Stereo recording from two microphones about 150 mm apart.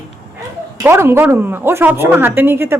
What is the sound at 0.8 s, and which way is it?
A woman's voice, 15° right (ahead or behind).